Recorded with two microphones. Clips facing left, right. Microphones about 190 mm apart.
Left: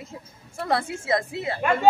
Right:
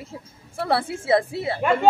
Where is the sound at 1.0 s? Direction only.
30° right (ahead or behind).